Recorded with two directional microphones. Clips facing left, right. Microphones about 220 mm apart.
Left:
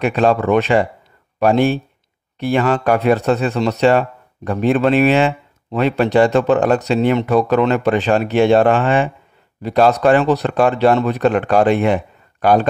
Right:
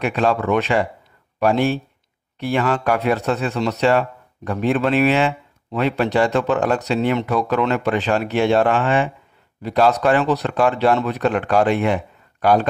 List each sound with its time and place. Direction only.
0.0 s speech: 25° left (ahead or behind)
8.6 s speech: 45° left (ahead or behind)
9.6 s speech: 30° left (ahead or behind)